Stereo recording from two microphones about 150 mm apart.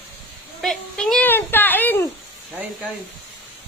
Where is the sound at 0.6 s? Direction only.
5° left (ahead or behind).